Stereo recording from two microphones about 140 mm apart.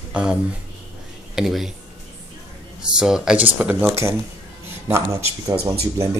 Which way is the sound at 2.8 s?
5° right (ahead or behind).